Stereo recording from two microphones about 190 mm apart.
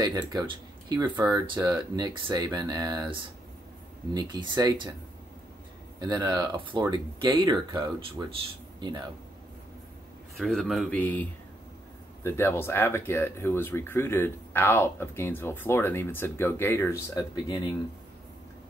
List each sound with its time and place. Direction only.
0.0 s speech: 20° right (ahead or behind)
4.1 s speech: 20° right (ahead or behind)
5.9 s speech: 20° right (ahead or behind)
10.3 s speech: centre (ahead or behind); by 17.6 s 15° left (ahead or behind)